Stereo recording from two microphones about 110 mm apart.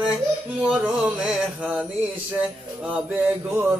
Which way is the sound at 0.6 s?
10° right (ahead or behind).